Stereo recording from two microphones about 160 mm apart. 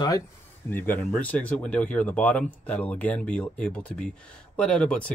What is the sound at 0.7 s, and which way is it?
Speech, 10° left (ahead or behind).